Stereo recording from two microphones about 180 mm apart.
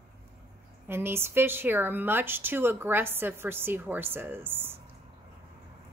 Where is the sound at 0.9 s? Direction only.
15° right (ahead or behind).